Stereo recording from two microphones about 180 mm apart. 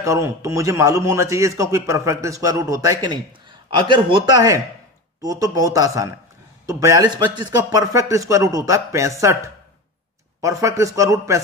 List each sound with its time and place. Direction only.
0.0 s a man's voice: 15° right (ahead or behind)